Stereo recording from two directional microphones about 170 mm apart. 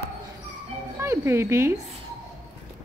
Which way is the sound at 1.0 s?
15° right (ahead or behind).